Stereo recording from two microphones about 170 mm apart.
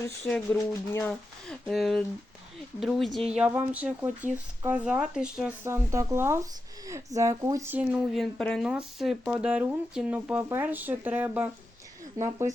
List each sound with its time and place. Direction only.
0.3 s speech: 10° left (ahead or behind); by 12.5 s 15° right (ahead or behind)